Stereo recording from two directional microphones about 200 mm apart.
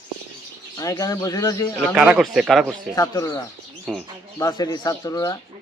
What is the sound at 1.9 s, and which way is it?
Speech, 5° right (ahead or behind).